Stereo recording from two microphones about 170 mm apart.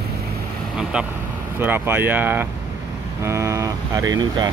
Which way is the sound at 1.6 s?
15° right (ahead or behind).